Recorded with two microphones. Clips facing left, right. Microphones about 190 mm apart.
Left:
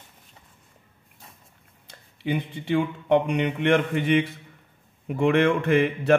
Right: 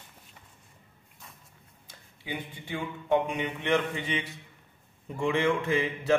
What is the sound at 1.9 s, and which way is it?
A man's voice, 75° left (ahead or behind).